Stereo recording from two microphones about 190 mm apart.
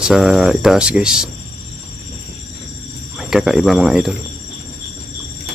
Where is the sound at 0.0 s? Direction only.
Centre (ahead or behind).